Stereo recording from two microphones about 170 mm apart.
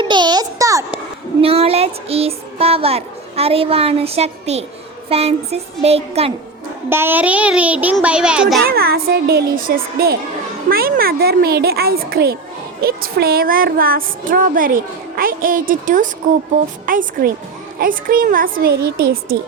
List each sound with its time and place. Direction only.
0.0 s a sound: 25° right (ahead or behind)
1.4 s child singing: 35° right (ahead or behind)
6.9 s a child's voice: 10° right (ahead or behind)
8.6 s a woman's voice: 65° right (ahead or behind)